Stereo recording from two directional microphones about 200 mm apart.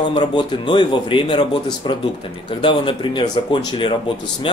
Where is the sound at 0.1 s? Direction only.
20° left (ahead or behind).